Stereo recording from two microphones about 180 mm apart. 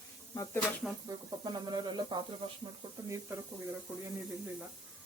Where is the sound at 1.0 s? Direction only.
20° right (ahead or behind).